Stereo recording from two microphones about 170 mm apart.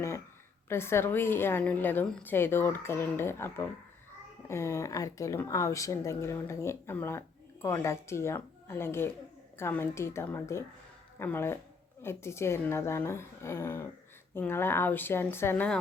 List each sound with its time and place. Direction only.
0.7 s speech: 15° left (ahead or behind)